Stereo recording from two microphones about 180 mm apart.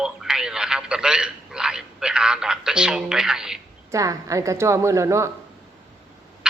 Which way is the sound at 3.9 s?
20° right (ahead or behind).